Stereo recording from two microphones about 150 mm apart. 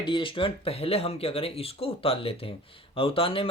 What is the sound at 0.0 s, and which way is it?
Speech, 35° left (ahead or behind).